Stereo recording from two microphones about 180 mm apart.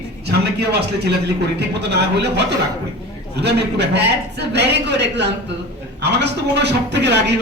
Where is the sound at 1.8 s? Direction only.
70° right (ahead or behind).